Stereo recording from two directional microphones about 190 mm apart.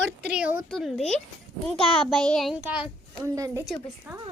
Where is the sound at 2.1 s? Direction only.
5° left (ahead or behind).